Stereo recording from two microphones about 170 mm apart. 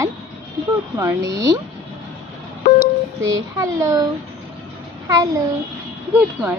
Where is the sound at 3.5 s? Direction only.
20° right (ahead or behind).